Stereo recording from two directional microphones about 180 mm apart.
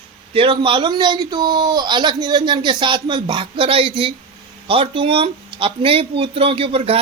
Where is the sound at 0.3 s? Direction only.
30° right (ahead or behind).